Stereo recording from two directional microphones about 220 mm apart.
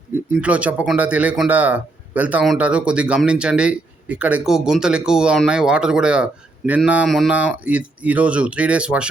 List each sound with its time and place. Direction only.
0.4 s a man's voice: 5° right (ahead or behind)